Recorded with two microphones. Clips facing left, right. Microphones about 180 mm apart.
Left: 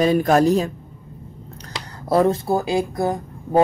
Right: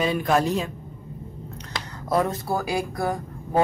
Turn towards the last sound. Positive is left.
turn(degrees=25)  # may be behind; listen again after turning